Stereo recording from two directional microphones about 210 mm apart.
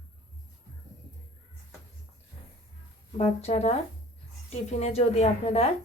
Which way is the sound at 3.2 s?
30° left (ahead or behind).